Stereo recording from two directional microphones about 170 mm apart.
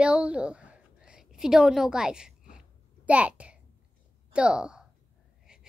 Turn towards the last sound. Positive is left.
turn(degrees=-5)  # may be behind; listen again after turning